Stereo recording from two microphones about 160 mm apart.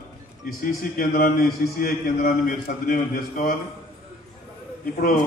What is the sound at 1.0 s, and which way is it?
A man's voice, 70° left (ahead or behind).